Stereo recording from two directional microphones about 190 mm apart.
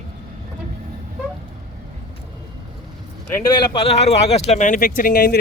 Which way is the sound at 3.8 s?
35° left (ahead or behind).